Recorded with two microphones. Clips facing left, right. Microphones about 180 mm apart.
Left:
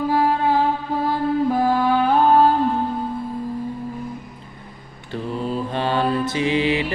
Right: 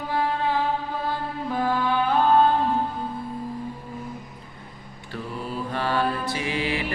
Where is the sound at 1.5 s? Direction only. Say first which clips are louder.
Left 6 dB; 35° left (ahead or behind).